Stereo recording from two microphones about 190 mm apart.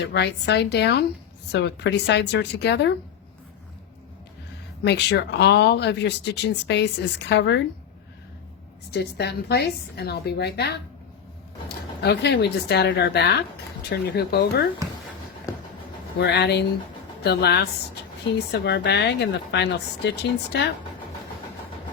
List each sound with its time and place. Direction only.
0.1 s speech: 60° left (ahead or behind)
4.8 s speech: 65° left (ahead or behind)
8.9 s speech: 60° left (ahead or behind)
12.0 s speech: 60° left (ahead or behind)
16.2 s speech: 60° left (ahead or behind)